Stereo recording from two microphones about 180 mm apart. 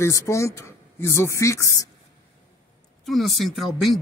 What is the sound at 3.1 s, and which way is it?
Speech, centre (ahead or behind).